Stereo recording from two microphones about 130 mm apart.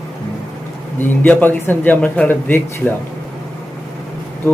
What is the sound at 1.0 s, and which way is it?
Speech, 15° left (ahead or behind).